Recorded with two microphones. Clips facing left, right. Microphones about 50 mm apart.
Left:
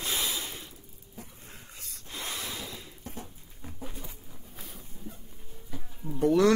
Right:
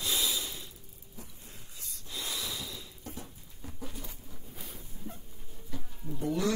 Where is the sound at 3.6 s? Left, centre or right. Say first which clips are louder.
Left 1 dB; centre.